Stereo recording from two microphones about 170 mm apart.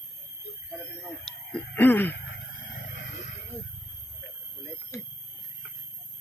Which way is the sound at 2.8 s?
50° left (ahead or behind).